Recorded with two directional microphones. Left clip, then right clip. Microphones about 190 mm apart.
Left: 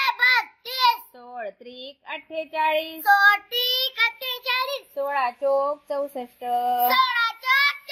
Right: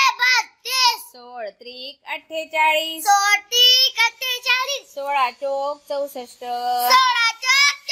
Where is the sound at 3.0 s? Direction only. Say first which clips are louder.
Left 1 dB; 20° right (ahead or behind).